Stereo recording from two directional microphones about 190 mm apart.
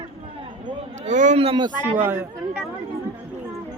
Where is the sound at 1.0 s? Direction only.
40° right (ahead or behind).